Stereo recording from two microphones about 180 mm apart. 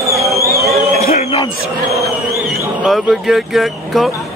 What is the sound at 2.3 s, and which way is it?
Speech, centre (ahead or behind).